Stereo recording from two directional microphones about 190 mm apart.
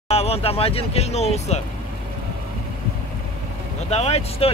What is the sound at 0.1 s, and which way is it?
Speech, 30° left (ahead or behind).